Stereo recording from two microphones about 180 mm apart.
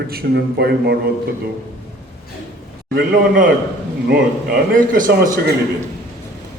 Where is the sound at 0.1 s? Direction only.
60° right (ahead or behind).